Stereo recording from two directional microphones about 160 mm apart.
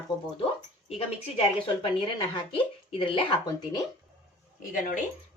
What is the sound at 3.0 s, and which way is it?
Speech, 30° left (ahead or behind).